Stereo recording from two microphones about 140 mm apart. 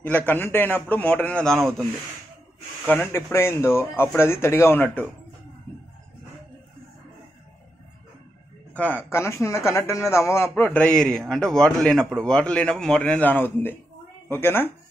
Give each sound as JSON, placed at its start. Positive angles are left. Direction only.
{"t": 0.0, "sound": "a man's voice", "side_deg": 10}
{"t": 2.9, "sound": "a man's voice", "side_deg": 15}
{"t": 8.7, "sound": "a man's voice", "side_deg": 10}